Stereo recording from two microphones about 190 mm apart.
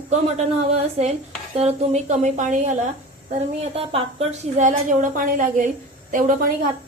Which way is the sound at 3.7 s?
30° right (ahead or behind).